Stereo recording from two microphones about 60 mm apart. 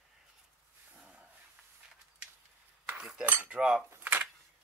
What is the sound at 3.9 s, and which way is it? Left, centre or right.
Camera, right.